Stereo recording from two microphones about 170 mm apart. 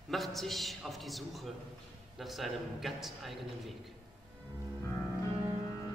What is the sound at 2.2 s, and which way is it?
A man's voice, centre (ahead or behind).